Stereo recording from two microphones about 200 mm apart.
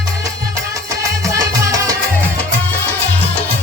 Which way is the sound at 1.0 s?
15° right (ahead or behind).